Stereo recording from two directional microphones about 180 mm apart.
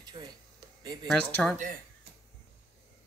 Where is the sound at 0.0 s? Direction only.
25° right (ahead or behind).